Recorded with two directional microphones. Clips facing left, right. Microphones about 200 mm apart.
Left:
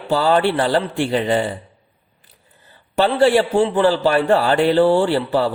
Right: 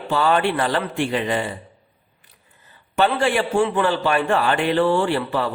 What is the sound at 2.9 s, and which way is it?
A man's voice, 35° left (ahead or behind).